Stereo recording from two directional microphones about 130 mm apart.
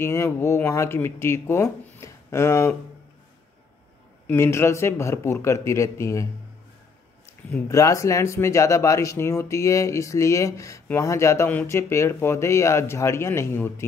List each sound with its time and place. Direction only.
0.0 s speech: 20° left (ahead or behind)
4.3 s speech: 20° left (ahead or behind)
7.6 s speech: 25° left (ahead or behind)